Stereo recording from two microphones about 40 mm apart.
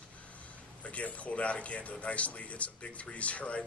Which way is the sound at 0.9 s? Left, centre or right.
Left.